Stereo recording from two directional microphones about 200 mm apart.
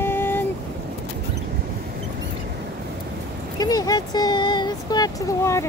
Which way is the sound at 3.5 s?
20° left (ahead or behind).